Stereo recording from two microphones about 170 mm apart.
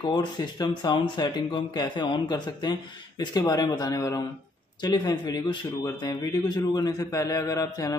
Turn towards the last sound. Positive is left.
turn(degrees=20)  # may be behind; listen again after turning